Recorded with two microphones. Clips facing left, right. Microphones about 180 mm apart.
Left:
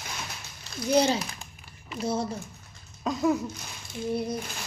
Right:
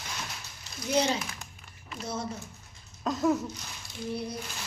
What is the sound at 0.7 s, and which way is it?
Speech, 30° left (ahead or behind).